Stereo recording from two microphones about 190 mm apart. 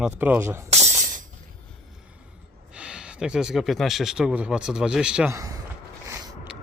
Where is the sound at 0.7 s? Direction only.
35° right (ahead or behind).